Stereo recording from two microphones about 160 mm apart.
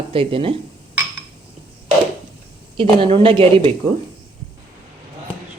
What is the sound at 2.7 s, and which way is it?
Speech, 35° right (ahead or behind).